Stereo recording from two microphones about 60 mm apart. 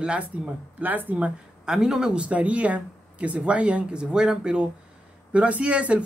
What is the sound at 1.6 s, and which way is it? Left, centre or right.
Speech, centre.